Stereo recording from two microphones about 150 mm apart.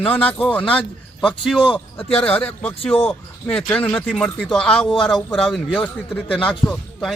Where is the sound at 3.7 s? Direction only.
10° left (ahead or behind).